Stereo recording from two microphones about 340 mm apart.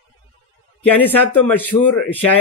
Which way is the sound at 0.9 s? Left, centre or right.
Centre.